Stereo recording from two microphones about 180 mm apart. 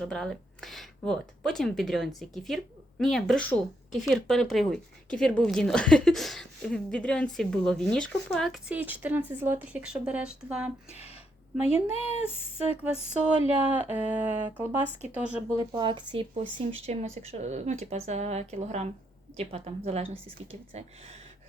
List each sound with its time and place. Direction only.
0.1 s a woman's voice: centre (ahead or behind)
11.6 s speech: 35° left (ahead or behind)
12.7 s speech: 5° right (ahead or behind)
15.8 s speech: 25° right (ahead or behind)